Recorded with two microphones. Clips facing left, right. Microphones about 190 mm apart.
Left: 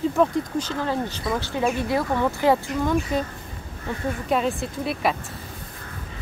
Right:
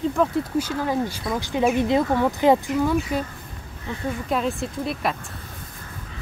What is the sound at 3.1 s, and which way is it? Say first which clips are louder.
Speech: left 1 dB; 5° right (ahead or behind).